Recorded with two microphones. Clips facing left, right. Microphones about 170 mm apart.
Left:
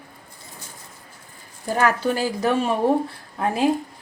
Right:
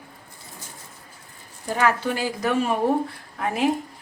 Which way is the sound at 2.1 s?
30° left (ahead or behind).